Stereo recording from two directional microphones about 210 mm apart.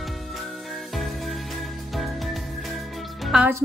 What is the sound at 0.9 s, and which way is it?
Music, centre (ahead or behind).